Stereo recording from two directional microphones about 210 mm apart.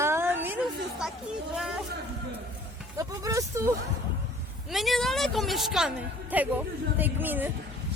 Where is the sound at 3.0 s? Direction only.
15° right (ahead or behind).